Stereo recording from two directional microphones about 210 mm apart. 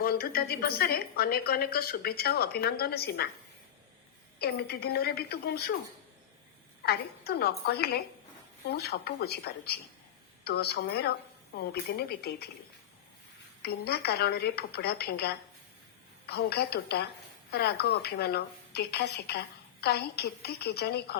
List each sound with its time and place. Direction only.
0.0 s a woman's voice: 45° left (ahead or behind)
4.4 s a woman's voice: 50° left (ahead or behind)
6.8 s a woman's voice: 50° left (ahead or behind)
13.6 s a woman's voice: 50° left (ahead or behind)